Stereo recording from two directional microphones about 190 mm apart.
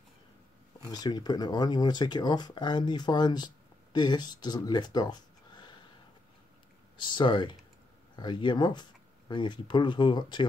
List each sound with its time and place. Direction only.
0.9 s speech: 20° left (ahead or behind)
7.0 s speech: 25° left (ahead or behind)